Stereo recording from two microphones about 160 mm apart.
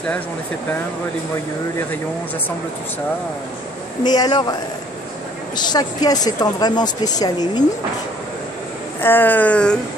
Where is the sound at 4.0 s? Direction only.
25° left (ahead or behind).